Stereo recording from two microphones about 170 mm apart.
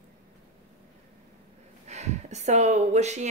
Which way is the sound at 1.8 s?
40° right (ahead or behind).